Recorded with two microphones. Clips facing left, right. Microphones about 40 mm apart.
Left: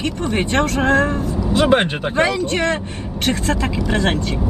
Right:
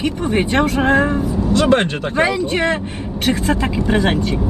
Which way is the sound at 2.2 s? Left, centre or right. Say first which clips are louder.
Right 1 dB; centre.